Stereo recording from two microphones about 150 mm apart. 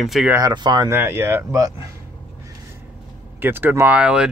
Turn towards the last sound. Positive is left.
turn(degrees=-10)  # may be behind; listen again after turning